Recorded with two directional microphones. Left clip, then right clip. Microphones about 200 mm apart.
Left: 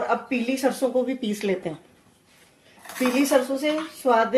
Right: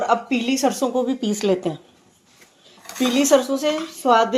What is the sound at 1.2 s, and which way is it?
Speech, 20° right (ahead or behind).